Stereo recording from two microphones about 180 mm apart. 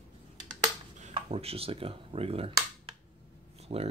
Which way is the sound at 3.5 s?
35° right (ahead or behind).